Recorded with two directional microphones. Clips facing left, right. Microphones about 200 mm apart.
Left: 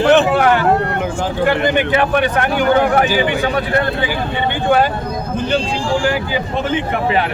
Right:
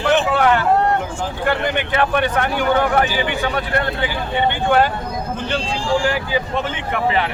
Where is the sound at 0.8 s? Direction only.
70° left (ahead or behind).